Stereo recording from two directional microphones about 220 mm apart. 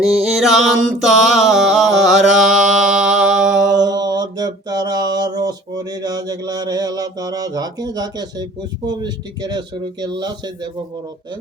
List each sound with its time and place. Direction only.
0.0 s mantra: centre (ahead or behind)
3.8 s mantra: 15° right (ahead or behind)
8.9 s speech: 20° right (ahead or behind)